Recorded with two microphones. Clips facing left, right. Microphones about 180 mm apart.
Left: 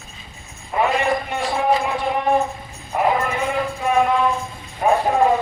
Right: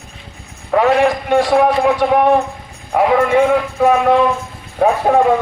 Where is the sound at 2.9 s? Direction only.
90° right.